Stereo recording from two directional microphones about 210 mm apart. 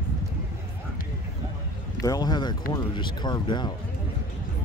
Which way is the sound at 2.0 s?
15° left (ahead or behind).